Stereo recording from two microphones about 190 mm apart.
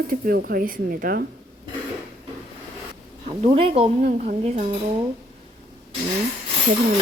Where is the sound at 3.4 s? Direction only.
30° right (ahead or behind).